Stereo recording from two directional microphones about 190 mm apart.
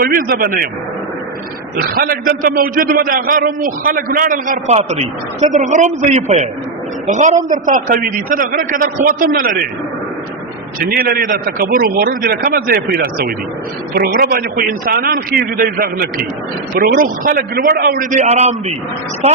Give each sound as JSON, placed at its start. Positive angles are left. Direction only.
{"t": 0.0, "sound": "a man's voice", "side_deg": -50}
{"t": 1.8, "sound": "a man's voice", "side_deg": -50}
{"t": 10.9, "sound": "a man's voice", "side_deg": -50}
{"t": 18.3, "sound": "a man's voice", "side_deg": -35}